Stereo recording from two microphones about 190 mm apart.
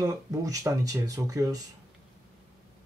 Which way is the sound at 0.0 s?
15° right (ahead or behind).